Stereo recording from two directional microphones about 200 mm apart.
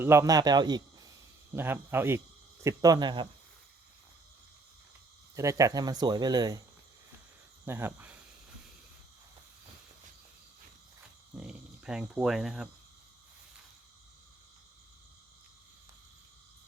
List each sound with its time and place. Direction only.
0.0 s a man's voice: 15° right (ahead or behind)
5.3 s speech: 15° right (ahead or behind)
7.6 s cricket: 10° right (ahead or behind)
11.3 s speech: 5° right (ahead or behind)